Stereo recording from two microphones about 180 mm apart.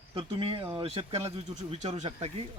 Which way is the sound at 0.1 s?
30° right (ahead or behind).